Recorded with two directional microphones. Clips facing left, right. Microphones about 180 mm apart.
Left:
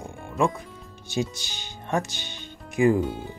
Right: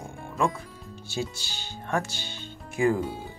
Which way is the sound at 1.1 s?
20° left (ahead or behind).